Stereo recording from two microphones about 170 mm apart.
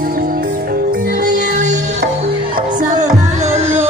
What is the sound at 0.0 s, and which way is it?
Music, 55° right (ahead or behind).